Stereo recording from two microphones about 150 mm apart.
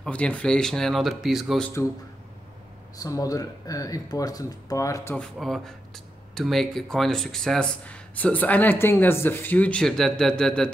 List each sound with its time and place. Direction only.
0.0 s speech: 10° left (ahead or behind)
3.0 s speech: 25° left (ahead or behind)
5.1 s speech: 5° left (ahead or behind)